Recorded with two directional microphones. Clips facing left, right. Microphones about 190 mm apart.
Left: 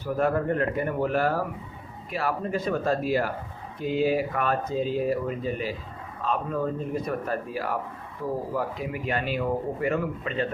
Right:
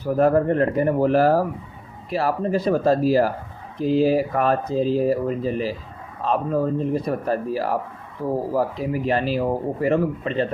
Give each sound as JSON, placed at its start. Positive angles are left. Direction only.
{"t": 0.0, "sound": "speech", "side_deg": -35}